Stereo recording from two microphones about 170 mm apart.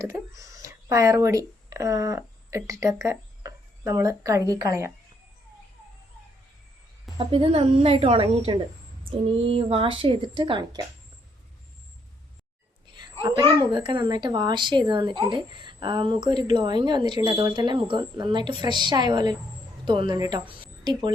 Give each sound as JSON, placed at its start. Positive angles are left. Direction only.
{"t": 0.0, "sound": "speech", "side_deg": -20}
{"t": 7.2, "sound": "a woman's voice", "side_deg": -30}
{"t": 12.9, "sound": "a sound", "side_deg": -25}
{"t": 13.6, "sound": "speech", "side_deg": -25}